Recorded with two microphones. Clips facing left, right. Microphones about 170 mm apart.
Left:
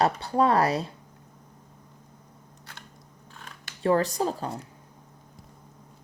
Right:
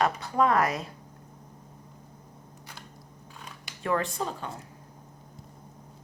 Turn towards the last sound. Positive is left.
turn(degrees=40)  # may be behind; listen again after turning